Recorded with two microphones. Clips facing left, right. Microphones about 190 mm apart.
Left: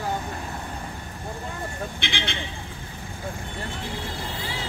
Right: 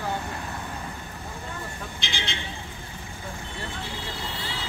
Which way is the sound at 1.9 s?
60° left (ahead or behind).